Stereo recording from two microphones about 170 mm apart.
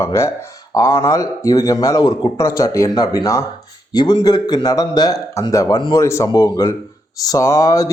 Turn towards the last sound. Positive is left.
turn(degrees=20)  # may be behind; listen again after turning